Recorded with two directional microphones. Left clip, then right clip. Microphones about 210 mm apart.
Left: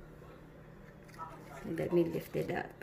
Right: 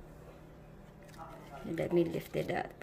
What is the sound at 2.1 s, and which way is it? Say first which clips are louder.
Speech: right 1 dB; centre (ahead or behind).